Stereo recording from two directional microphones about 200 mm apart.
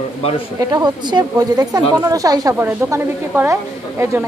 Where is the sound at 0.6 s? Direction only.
20° right (ahead or behind).